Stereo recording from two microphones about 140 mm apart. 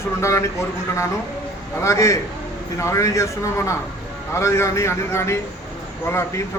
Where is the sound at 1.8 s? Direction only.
20° left (ahead or behind).